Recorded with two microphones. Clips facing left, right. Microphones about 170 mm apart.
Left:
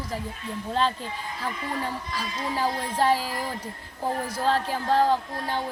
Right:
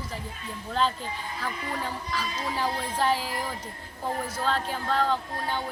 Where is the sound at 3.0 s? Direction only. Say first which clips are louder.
Left 3 dB; 40° left (ahead or behind).